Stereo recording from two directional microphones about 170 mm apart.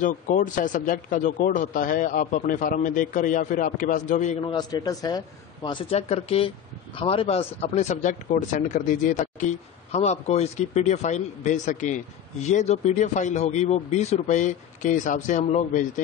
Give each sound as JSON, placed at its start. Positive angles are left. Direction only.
{"t": 0.0, "sound": "speech", "side_deg": 50}
{"t": 4.4, "sound": "a man's voice", "side_deg": 25}